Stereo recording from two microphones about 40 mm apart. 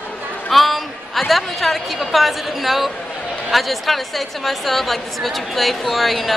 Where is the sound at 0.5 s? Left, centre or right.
Centre.